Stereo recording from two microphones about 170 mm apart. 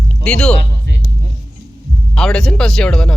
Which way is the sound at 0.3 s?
5° left (ahead or behind).